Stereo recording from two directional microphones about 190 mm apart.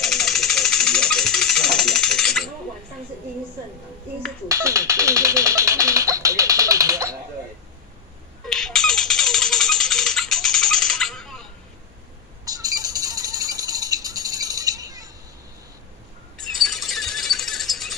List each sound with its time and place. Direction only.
0.0 s jackhammer: centre (ahead or behind)
4.5 s music: 15° right (ahead or behind)
8.5 s music: 5° left (ahead or behind)
12.4 s bird: 20° right (ahead or behind)
16.6 s a sound: centre (ahead or behind)